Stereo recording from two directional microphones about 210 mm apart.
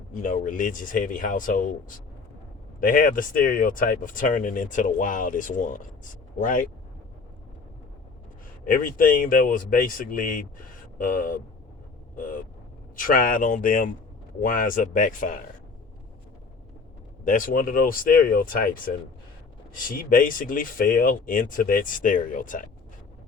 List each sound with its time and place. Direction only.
0.1 s speech: 40° left (ahead or behind)
8.6 s speech: 40° left (ahead or behind)
17.2 s speech: 40° left (ahead or behind)
19.9 s speech: 40° left (ahead or behind)